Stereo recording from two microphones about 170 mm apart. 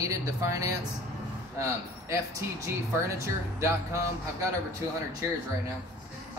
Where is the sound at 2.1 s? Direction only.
15° right (ahead or behind).